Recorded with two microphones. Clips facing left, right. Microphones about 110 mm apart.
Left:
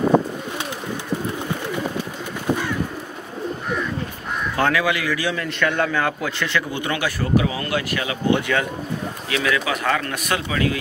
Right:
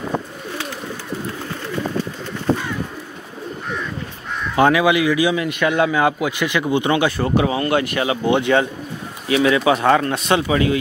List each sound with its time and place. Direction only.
4.6 s a man's voice: 15° right (ahead or behind)